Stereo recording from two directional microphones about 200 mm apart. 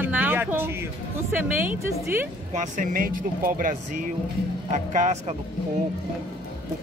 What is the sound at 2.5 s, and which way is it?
Speech, 40° right (ahead or behind).